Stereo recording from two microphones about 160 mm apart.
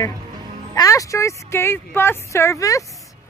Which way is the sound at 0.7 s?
20° left (ahead or behind).